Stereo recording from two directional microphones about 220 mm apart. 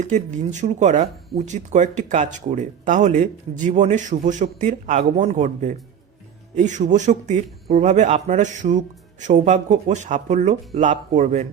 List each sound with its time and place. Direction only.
0.0 s speech: 35° right (ahead or behind)